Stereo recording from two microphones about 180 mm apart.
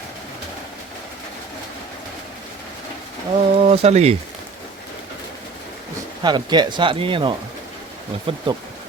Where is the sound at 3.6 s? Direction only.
35° right (ahead or behind).